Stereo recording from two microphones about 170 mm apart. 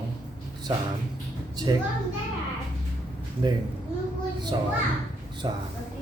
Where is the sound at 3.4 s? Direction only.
25° right (ahead or behind).